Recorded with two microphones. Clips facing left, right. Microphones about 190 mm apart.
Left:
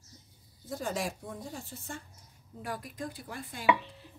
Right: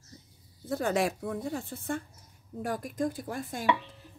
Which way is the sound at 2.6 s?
45° right (ahead or behind).